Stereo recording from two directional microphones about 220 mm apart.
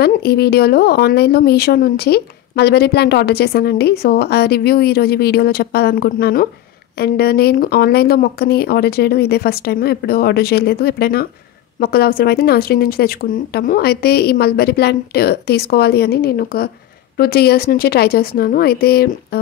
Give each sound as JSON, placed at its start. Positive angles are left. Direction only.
{"t": 0.0, "sound": "a woman's voice", "side_deg": 45}